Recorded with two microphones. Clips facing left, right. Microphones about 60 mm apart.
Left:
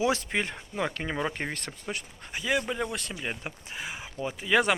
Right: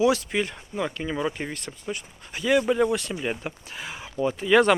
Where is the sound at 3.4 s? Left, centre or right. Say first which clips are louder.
Right 2 dB; centre.